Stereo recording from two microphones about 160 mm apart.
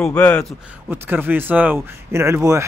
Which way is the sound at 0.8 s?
15° right (ahead or behind).